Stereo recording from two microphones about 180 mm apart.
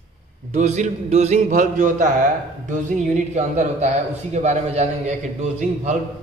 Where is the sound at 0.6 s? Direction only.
40° right (ahead or behind).